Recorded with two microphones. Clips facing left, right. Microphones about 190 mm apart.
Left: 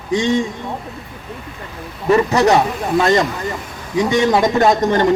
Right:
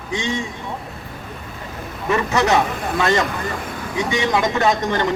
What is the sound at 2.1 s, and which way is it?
Speech, 35° left (ahead or behind).